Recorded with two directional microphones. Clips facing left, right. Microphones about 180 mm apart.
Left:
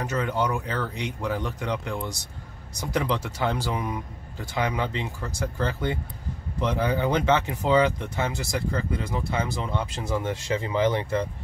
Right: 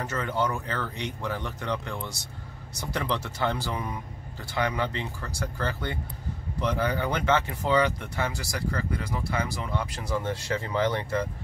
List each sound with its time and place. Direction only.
0.0 s speech: 15° left (ahead or behind)